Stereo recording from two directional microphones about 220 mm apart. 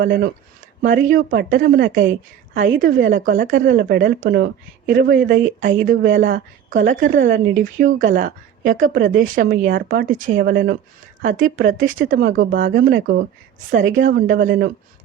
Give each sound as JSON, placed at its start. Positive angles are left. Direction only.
{"t": 0.0, "sound": "speech", "side_deg": -40}
{"t": 6.1, "sound": "speech", "side_deg": -60}
{"t": 6.3, "sound": "a woman's voice", "side_deg": -35}
{"t": 14.4, "sound": "speech", "side_deg": -55}